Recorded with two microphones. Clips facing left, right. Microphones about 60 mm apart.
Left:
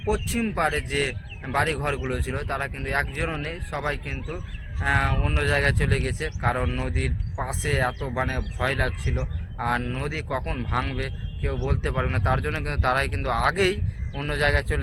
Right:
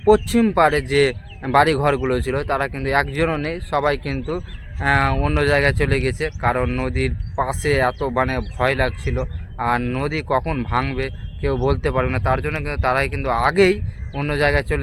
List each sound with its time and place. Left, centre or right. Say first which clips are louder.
0.0 s a man's voice: right 11 dB; right
4.4 s a man's voice: right 7 dB; right